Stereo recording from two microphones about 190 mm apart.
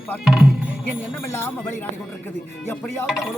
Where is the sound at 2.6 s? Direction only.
10° left (ahead or behind).